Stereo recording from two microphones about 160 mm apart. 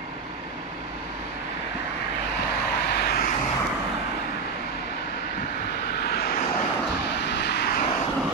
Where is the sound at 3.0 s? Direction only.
75° left (ahead or behind).